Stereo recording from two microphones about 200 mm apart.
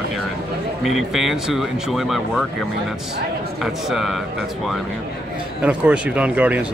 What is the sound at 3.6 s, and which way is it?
Speech, centre (ahead or behind).